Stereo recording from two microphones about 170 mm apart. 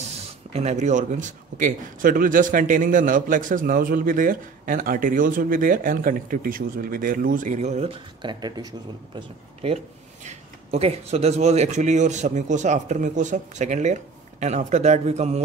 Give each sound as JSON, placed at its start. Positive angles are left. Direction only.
{"t": 0.5, "sound": "a man's voice", "side_deg": -40}
{"t": 10.2, "sound": "a man's voice", "side_deg": -35}